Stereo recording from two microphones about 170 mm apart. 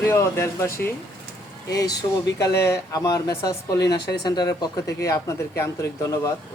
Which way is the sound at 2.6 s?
20° left (ahead or behind).